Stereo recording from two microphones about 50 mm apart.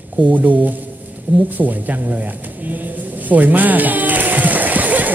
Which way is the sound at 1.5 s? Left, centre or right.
Right.